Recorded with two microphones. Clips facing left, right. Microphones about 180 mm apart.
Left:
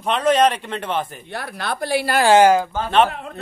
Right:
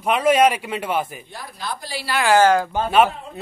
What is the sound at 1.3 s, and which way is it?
Speech, 70° left (ahead or behind).